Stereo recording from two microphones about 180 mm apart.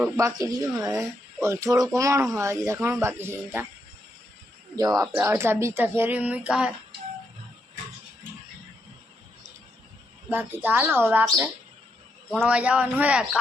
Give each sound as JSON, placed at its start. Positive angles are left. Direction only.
{"t": 0.0, "sound": "speech", "side_deg": -15}
{"t": 4.8, "sound": "speech", "side_deg": -20}
{"t": 10.2, "sound": "speech", "side_deg": -10}